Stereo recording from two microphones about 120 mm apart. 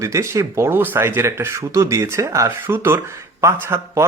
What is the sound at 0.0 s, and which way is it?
Speech, 25° right (ahead or behind).